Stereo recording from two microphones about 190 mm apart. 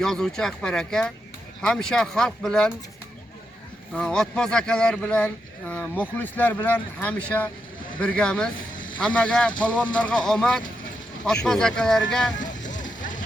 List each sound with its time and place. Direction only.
0.0 s speech: centre (ahead or behind)
3.9 s speech: 5° left (ahead or behind)
8.7 s vehicle: 45° left (ahead or behind)
9.0 s speech: 5° left (ahead or behind)
12.4 s boat: 40° left (ahead or behind)
13.0 s a sound: 45° left (ahead or behind)